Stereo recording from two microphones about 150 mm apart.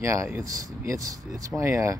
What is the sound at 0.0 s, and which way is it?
Speech, 20° right (ahead or behind).